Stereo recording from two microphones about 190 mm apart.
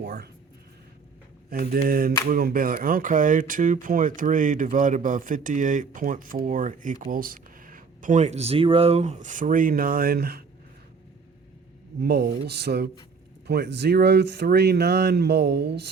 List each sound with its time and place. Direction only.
0.0 s a sound: 55° right (ahead or behind)
1.5 s speech: 50° right (ahead or behind)
11.9 s speech: 55° right (ahead or behind)